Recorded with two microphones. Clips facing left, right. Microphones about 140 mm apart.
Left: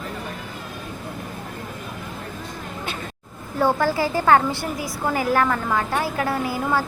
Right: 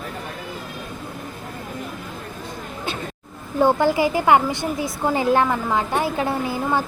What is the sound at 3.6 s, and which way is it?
A woman's voice, 20° right (ahead or behind).